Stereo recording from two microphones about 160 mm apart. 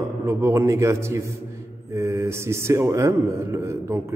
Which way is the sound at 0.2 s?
15° right (ahead or behind).